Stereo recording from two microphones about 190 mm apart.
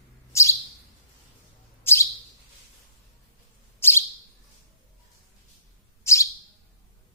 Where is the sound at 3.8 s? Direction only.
10° left (ahead or behind).